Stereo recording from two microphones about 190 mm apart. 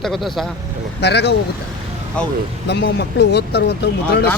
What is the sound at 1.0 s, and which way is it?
Speech, 60° left (ahead or behind).